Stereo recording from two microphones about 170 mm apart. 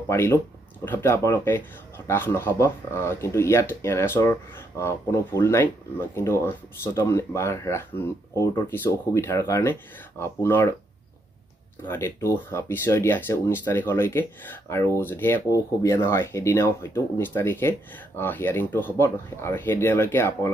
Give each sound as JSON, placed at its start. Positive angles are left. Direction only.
{"t": 0.1, "sound": "speech", "side_deg": 15}
{"t": 11.8, "sound": "speech", "side_deg": 15}